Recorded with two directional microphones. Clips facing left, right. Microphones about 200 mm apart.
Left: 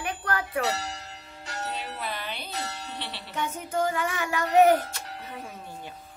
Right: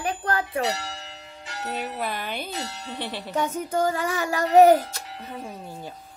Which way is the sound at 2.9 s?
50° right (ahead or behind).